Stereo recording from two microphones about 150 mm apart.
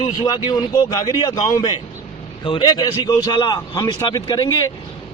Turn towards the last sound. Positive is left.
turn(degrees=25)  # may be behind; listen again after turning